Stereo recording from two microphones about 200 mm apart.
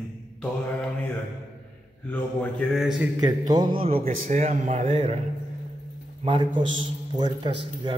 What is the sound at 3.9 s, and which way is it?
Speech, 35° right (ahead or behind).